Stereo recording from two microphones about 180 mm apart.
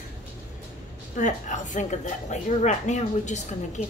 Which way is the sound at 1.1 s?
45° left (ahead or behind).